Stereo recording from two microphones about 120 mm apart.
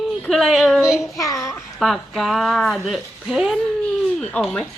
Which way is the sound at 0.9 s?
25° left (ahead or behind).